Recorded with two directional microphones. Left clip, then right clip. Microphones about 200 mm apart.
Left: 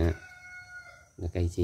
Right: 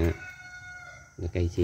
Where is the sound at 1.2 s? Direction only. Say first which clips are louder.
Right 2 dB; 10° left (ahead or behind).